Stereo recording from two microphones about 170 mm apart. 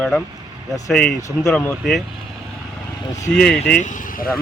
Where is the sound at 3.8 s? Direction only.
50° left (ahead or behind).